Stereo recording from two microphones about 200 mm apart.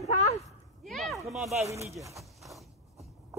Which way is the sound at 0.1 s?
30° left (ahead or behind).